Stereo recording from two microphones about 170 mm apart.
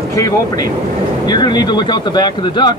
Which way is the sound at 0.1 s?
20° left (ahead or behind).